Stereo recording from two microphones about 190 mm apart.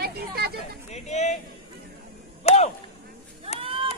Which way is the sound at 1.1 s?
35° left (ahead or behind).